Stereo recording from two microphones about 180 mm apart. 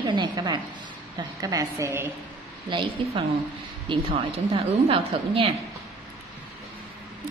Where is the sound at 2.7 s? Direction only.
25° right (ahead or behind).